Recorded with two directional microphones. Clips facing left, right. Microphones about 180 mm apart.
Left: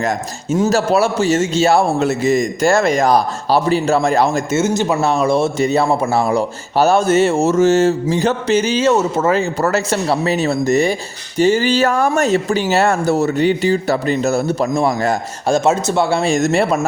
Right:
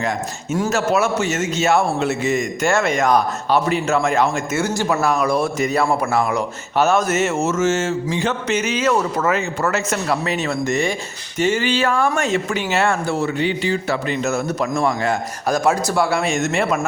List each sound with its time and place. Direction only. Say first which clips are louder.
0.7 s a man's voice: left 2 dB; 35° left (ahead or behind)
4.5 s a man's voice: left 4 dB; 20° left (ahead or behind); by 16.8 s 35° left (ahead or behind)